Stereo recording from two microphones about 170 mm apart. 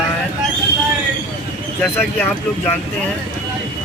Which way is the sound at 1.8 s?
15° left (ahead or behind).